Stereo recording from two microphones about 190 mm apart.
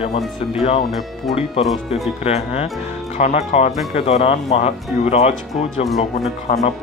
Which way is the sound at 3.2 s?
35° left (ahead or behind).